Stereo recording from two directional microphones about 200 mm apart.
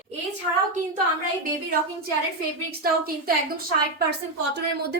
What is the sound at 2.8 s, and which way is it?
A woman's voice, 50° right (ahead or behind).